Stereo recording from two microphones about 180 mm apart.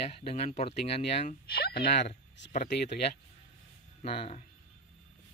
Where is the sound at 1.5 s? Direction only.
60° left (ahead or behind).